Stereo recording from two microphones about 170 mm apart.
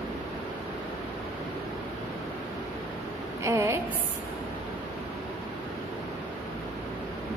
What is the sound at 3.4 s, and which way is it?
Speech, 15° right (ahead or behind).